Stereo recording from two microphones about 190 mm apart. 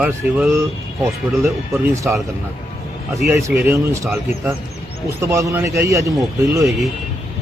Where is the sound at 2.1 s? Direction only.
5° right (ahead or behind).